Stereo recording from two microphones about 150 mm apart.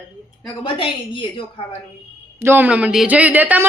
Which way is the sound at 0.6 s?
35° left (ahead or behind).